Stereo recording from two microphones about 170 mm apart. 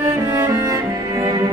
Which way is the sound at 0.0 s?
20° right (ahead or behind).